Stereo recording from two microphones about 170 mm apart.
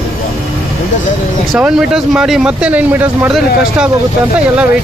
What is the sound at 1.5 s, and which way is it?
Speech, 5° right (ahead or behind).